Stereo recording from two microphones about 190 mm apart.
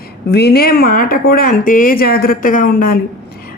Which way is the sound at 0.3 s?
60° left (ahead or behind).